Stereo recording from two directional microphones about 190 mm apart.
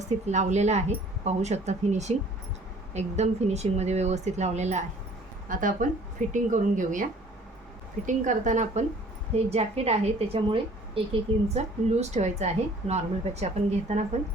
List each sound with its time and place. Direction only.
0.3 s a woman's voice: 35° right (ahead or behind)